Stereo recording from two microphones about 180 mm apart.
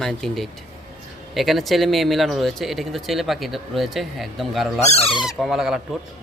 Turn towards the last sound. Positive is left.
turn(degrees=0)  # may be behind; listen again after turning